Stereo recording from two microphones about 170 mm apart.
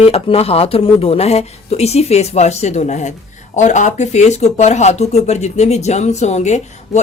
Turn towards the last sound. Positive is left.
turn(degrees=45)  # may be behind; listen again after turning